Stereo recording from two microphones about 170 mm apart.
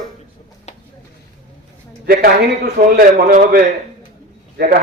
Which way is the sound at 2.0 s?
60° right (ahead or behind).